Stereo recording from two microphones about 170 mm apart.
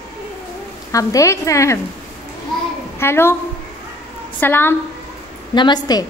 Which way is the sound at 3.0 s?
15° left (ahead or behind).